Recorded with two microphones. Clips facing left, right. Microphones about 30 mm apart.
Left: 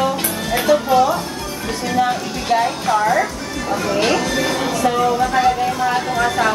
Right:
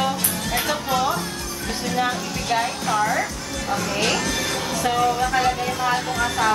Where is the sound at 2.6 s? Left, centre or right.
Centre.